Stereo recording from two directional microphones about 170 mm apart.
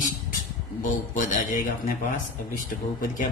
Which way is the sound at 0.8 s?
50° left (ahead or behind).